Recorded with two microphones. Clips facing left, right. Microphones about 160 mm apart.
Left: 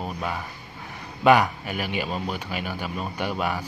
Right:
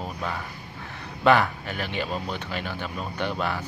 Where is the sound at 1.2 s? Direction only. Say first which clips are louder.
Left 2 dB; 15° left (ahead or behind).